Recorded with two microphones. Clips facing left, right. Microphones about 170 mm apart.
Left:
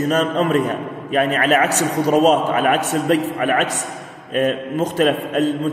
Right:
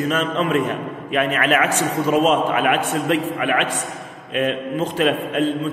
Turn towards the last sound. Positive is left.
turn(degrees=40)  # may be behind; listen again after turning